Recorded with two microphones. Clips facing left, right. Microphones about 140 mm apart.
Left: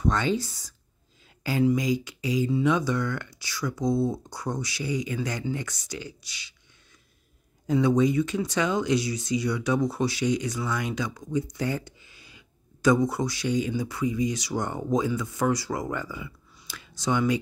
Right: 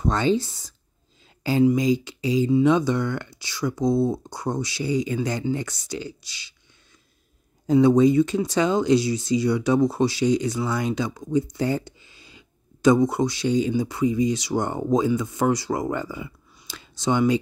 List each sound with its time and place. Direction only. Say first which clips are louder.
0.0 s speech: right 4 dB; 30° right (ahead or behind)
7.6 s speech: right 6 dB; 30° right (ahead or behind)
16.6 s a sound: right 4 dB; 25° right (ahead or behind)